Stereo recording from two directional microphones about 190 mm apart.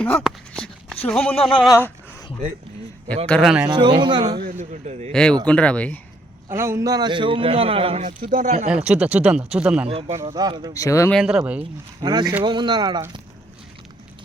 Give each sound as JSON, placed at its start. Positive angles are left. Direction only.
{"t": 0.0, "sound": "speech", "side_deg": 5}
{"t": 1.7, "sound": "a sound", "side_deg": 15}
{"t": 3.2, "sound": "speech", "side_deg": 5}
{"t": 3.7, "sound": "a man's voice", "side_deg": -25}
{"t": 4.4, "sound": "speech", "side_deg": -45}
{"t": 5.1, "sound": "speech", "side_deg": 5}
{"t": 6.5, "sound": "a man's voice", "side_deg": -15}
{"t": 8.7, "sound": "speech", "side_deg": -5}
{"t": 10.2, "sound": "a man's voice", "side_deg": -20}
{"t": 10.8, "sound": "speech", "side_deg": 15}
{"t": 11.1, "sound": "speech", "side_deg": -5}
{"t": 11.9, "sound": "a man's voice", "side_deg": -20}